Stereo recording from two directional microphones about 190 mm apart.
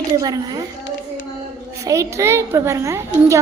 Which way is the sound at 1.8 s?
15° right (ahead or behind).